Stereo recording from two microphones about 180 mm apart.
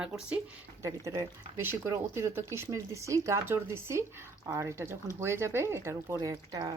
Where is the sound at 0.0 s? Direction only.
10° right (ahead or behind).